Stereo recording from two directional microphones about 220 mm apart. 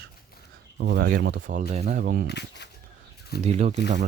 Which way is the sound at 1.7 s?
30° right (ahead or behind).